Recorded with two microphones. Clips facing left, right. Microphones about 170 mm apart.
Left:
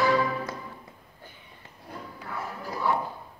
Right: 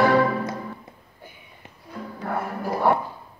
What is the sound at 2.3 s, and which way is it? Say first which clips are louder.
Music: right 9 dB; 55° right (ahead or behind).